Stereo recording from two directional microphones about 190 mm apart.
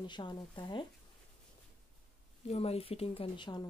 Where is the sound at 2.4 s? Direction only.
30° left (ahead or behind).